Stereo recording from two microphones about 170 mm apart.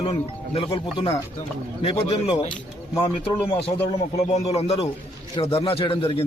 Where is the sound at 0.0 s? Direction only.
30° left (ahead or behind).